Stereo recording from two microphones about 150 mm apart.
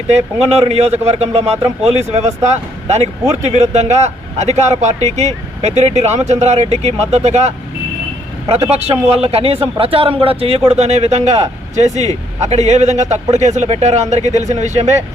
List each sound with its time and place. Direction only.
0.1 s a man's voice: 45° right (ahead or behind)